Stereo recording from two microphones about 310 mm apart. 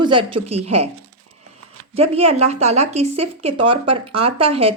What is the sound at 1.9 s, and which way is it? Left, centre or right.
Speech, centre.